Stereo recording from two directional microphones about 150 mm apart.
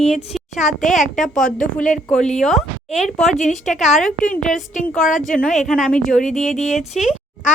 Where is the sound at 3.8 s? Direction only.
Centre (ahead or behind).